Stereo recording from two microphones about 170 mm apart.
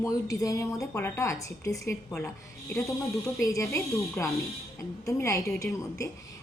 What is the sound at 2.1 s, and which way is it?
Speech, centre (ahead or behind).